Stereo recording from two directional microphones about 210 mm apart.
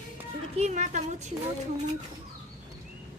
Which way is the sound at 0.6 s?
35° right (ahead or behind).